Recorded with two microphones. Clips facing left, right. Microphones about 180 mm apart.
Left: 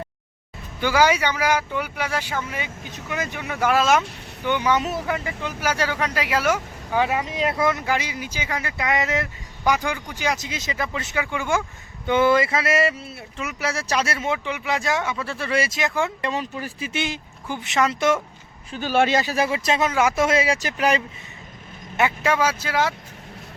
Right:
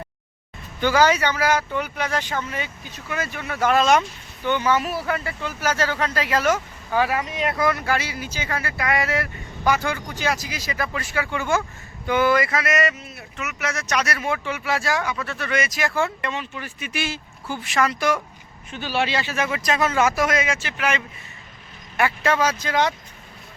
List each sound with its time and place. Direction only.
0.8 s speech: 10° left (ahead or behind)
12.0 s speech: 25° left (ahead or behind)
15.8 s speech: 15° left (ahead or behind)
16.2 s speech: 35° left (ahead or behind)
16.9 s speech: 20° left (ahead or behind)
18.7 s speech: 45° left (ahead or behind); by 19.9 s 25° left (ahead or behind)
19.9 s speech: 10° left (ahead or behind)
20.1 s speech: 30° left (ahead or behind)
21.9 s speech: 15° left (ahead or behind)